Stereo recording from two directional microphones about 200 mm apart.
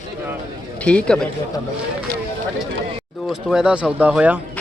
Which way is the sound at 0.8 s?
5° left (ahead or behind).